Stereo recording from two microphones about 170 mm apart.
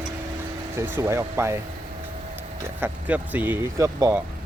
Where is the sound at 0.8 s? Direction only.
15° right (ahead or behind).